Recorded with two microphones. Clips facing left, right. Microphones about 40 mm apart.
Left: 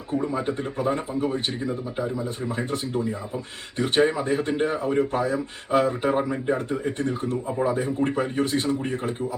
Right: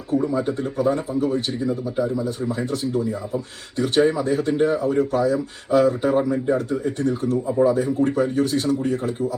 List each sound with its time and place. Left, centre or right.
0.1 s speech: left
6.1 s speech: centre